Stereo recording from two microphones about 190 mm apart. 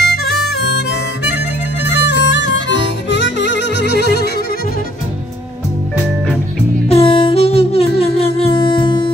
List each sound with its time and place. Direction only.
0.0 s music: 55° left (ahead or behind)
0.7 s harmonica: 60° left (ahead or behind)
2.0 s music: 70° left (ahead or behind)
6.9 s music: 30° left (ahead or behind)